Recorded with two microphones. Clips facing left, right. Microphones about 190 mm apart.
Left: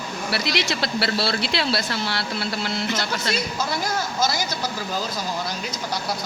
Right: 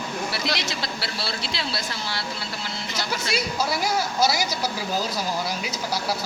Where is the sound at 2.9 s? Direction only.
10° right (ahead or behind).